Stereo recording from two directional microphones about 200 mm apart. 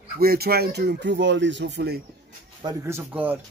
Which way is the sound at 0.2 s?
50° right (ahead or behind).